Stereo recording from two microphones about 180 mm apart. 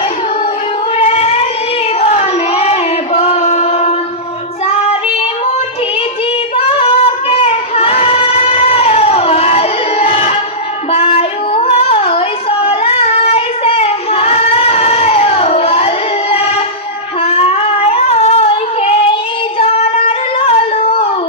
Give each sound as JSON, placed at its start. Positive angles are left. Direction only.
{"t": 0.9, "sound": "singing", "side_deg": 35}
{"t": 2.0, "sound": "child singing", "side_deg": 35}
{"t": 6.7, "sound": "child singing", "side_deg": 35}